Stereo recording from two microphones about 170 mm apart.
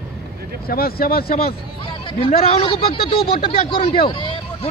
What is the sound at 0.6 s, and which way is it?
Speech, 60° left (ahead or behind).